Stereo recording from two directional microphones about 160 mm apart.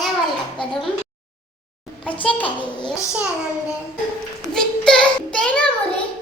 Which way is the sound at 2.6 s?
30° left (ahead or behind).